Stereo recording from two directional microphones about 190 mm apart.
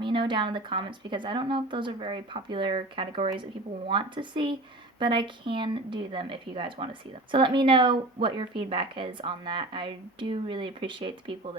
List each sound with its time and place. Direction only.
0.0 s speech: 25° right (ahead or behind)